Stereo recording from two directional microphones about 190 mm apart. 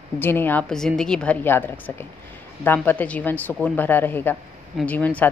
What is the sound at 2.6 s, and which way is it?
A woman's voice, 10° left (ahead or behind).